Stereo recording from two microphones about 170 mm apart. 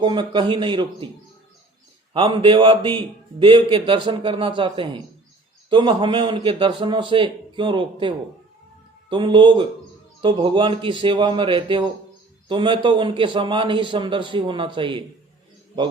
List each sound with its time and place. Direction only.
0.0 s a man's voice: 25° right (ahead or behind)
2.1 s a man's voice: 30° right (ahead or behind)